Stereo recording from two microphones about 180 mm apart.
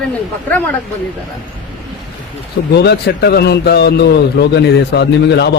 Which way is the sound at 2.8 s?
65° left (ahead or behind).